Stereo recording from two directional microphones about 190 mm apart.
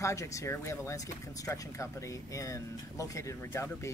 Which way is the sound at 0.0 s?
15° left (ahead or behind).